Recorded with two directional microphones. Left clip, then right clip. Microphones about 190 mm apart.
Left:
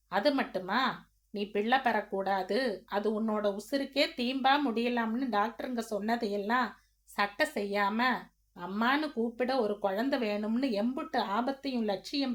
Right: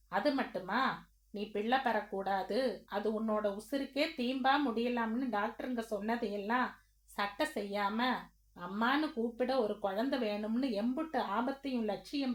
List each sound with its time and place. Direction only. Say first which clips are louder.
0.1 s speech: left 4 dB; 30° left (ahead or behind)